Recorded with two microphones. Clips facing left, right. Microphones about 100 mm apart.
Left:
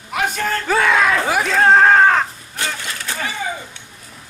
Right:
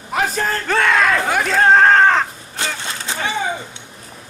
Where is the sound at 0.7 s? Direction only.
5° left (ahead or behind).